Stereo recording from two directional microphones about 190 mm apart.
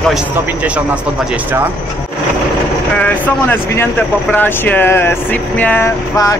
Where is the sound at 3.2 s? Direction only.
10° left (ahead or behind).